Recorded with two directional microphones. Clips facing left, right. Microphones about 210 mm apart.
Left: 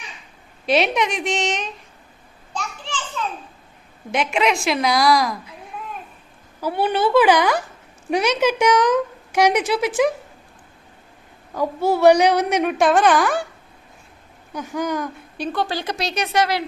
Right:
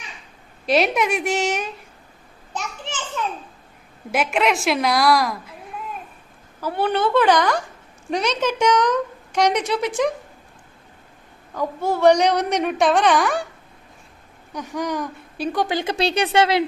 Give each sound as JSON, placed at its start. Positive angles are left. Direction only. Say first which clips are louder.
{"t": 0.6, "sound": "a woman's voice", "louder": "even", "side_deg": 0}
{"t": 4.1, "sound": "a woman's voice", "louder": "even", "side_deg": -5}
{"t": 6.6, "sound": "a woman's voice", "louder": "left 1 dB", "side_deg": 10}
{"t": 11.5, "sound": "a woman's voice", "louder": "left 3 dB", "side_deg": 10}
{"t": 14.5, "sound": "speech", "louder": "left 1 dB", "side_deg": 0}
{"t": 15.5, "sound": "a woman's voice", "louder": "right 3 dB", "side_deg": -20}